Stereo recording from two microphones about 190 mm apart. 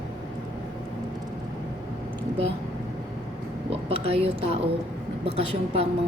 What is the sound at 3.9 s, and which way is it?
A woman's voice, 30° right (ahead or behind).